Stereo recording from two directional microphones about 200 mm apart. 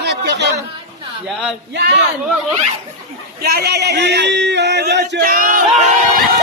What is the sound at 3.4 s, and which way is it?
Speech, 50° right (ahead or behind).